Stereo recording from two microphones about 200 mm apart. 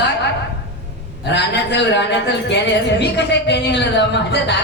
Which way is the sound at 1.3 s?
60° left (ahead or behind).